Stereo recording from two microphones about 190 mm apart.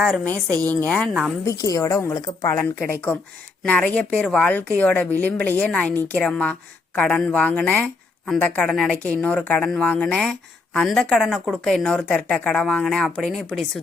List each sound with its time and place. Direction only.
0.0 s a woman's voice: 5° left (ahead or behind)
1.5 s a woman's voice: 20° left (ahead or behind); by 13.7 s centre (ahead or behind)